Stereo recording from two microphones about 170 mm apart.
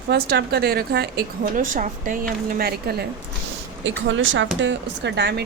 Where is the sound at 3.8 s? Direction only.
90° right.